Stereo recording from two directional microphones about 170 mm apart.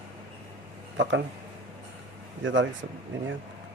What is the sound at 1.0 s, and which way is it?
Speech, 90° right.